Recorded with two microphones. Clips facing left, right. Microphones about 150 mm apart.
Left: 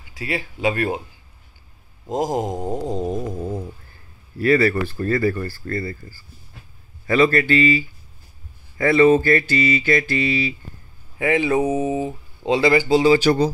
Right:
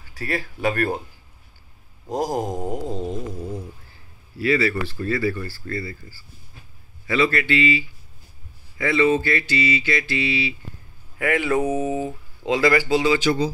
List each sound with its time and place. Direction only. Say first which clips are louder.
0.1 s speech: left 1 dB; 15° left (ahead or behind)
2.0 s speech: left 2 dB; 20° left (ahead or behind)
2.7 s a sound: left 3 dB; 35° left (ahead or behind); by 3.6 s 50° left (ahead or behind)
4.4 s speech: left 4 dB; 50° left (ahead or behind)
11.1 s speech: left 2 dB; 25° left (ahead or behind)